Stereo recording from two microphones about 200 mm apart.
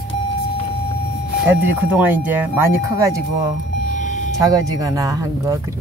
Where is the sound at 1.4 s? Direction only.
10° right (ahead or behind).